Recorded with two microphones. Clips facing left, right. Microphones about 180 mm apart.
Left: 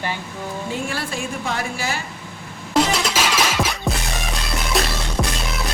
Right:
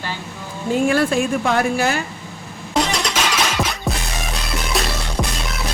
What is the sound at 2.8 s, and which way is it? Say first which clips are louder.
Music: left 1 dB; centre (ahead or behind).